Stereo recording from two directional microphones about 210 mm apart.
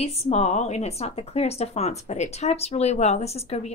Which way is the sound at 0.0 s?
30° left (ahead or behind).